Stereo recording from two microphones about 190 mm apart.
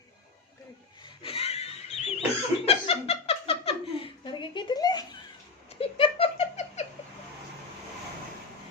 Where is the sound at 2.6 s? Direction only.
30° left (ahead or behind).